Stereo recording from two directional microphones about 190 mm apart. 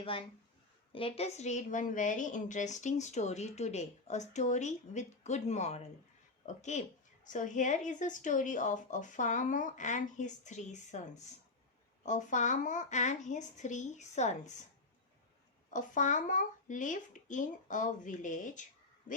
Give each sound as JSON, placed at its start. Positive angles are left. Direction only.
{"t": 0.0, "sound": "a woman's voice", "side_deg": 30}
{"t": 15.7, "sound": "a woman's voice", "side_deg": 40}